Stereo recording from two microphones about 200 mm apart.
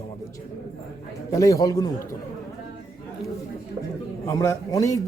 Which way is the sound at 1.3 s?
15° left (ahead or behind).